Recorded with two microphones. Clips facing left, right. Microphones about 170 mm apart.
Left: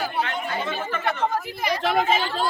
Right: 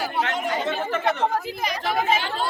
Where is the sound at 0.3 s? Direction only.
90° right.